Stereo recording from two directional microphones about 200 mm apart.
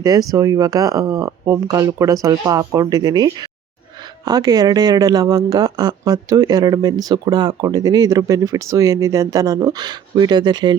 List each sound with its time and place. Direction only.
0.0 s speech: 20° right (ahead or behind)